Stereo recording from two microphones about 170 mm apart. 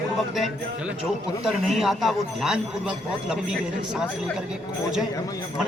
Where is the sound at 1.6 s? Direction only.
Centre (ahead or behind).